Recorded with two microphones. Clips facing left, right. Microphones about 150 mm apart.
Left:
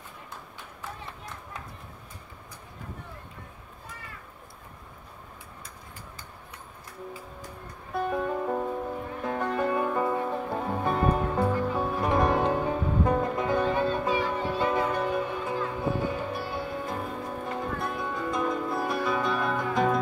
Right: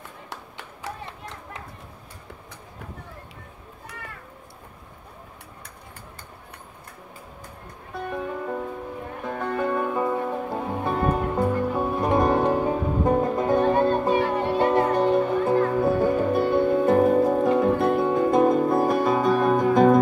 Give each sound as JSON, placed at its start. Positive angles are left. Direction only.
{"t": 0.3, "sound": "tap", "side_deg": -90}
{"t": 8.1, "sound": "music", "side_deg": 10}
{"t": 11.8, "sound": "music", "side_deg": -20}
{"t": 13.5, "sound": "music", "side_deg": -45}